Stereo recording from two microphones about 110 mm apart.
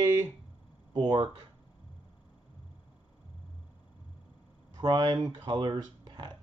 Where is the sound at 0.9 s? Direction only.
40° right (ahead or behind).